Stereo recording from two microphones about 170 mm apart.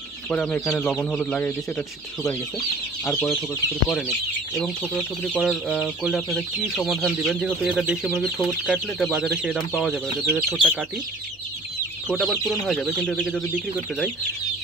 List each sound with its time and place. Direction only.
0.3 s speech: 10° left (ahead or behind)
3.1 s speech: 10° left (ahead or behind)
5.4 s speech: 5° right (ahead or behind)
12.1 s speech: centre (ahead or behind)